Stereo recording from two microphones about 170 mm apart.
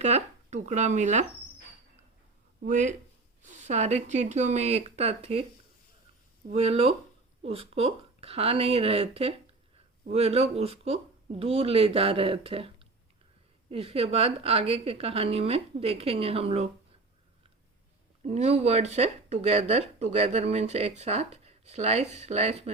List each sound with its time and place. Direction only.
0.0 s speech: 40° right (ahead or behind)
2.6 s speech: 50° right (ahead or behind)
6.5 s speech: 35° right (ahead or behind)
18.2 s speech: 40° right (ahead or behind)